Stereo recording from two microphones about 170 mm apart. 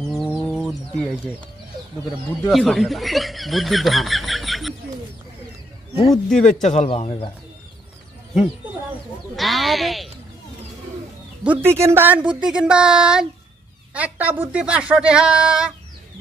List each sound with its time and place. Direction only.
0.3 s chicken: 5° left (ahead or behind)
2.5 s speech: centre (ahead or behind)
6.0 s a woman's voice: 5° left (ahead or behind)
6.6 s a man's voice: 40° left (ahead or behind)
9.4 s speech: centre (ahead or behind)
11.4 s a woman's voice: 10° right (ahead or behind)